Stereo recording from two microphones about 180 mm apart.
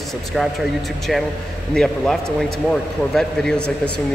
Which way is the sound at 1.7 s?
5° left (ahead or behind).